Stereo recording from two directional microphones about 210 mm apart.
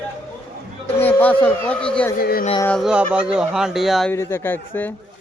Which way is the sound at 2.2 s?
45° left (ahead or behind).